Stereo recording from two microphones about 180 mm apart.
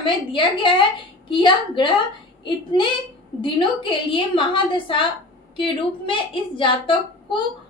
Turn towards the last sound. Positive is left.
turn(degrees=30)  # may be behind; listen again after turning